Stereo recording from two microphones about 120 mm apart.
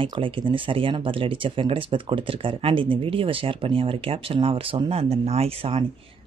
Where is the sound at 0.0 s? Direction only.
45° right (ahead or behind).